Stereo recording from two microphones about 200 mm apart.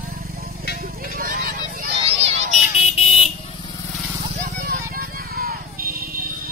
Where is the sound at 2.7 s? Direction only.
30° left (ahead or behind).